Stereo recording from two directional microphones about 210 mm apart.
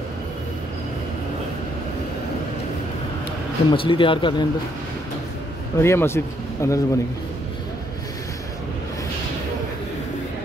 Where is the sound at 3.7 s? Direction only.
25° left (ahead or behind).